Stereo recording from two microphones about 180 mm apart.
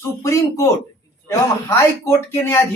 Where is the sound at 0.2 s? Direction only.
15° left (ahead or behind).